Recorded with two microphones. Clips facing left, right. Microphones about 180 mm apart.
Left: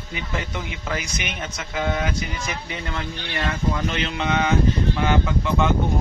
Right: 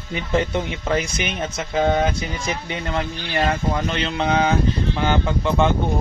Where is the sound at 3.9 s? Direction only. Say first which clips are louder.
Right 3 dB; 35° right (ahead or behind).